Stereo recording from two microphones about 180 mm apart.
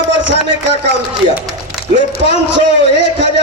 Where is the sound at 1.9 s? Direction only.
75° right (ahead or behind).